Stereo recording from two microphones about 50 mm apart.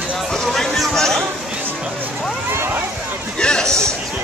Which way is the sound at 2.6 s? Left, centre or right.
Right.